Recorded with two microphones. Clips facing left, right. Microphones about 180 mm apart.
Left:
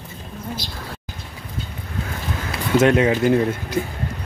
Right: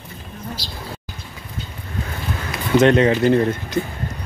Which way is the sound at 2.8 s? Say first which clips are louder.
Right 2 dB; 5° left (ahead or behind).